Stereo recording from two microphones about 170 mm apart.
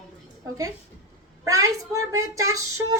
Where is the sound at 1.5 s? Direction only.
20° right (ahead or behind).